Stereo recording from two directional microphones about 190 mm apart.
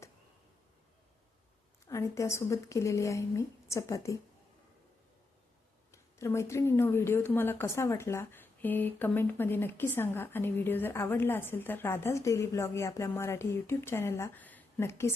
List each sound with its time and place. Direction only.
1.9 s speech: 15° left (ahead or behind)
5.9 s speech: 15° left (ahead or behind)